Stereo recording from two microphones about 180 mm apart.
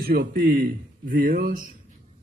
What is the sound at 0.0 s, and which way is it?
A man's voice, 55° right (ahead or behind).